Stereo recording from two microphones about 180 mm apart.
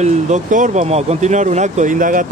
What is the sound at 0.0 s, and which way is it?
Speech, 40° right (ahead or behind).